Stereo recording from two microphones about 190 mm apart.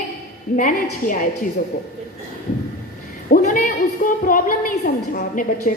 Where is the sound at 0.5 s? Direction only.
45° left (ahead or behind).